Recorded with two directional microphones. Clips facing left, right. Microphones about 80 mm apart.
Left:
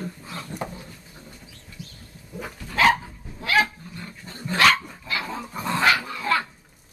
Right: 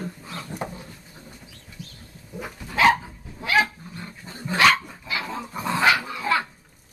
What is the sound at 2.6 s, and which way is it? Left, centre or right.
Dog, centre.